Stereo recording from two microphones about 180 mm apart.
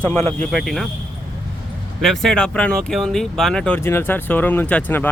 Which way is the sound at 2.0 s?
Centre (ahead or behind).